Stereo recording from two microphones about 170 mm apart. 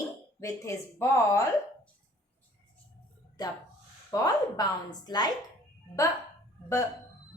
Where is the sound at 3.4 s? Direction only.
25° left (ahead or behind).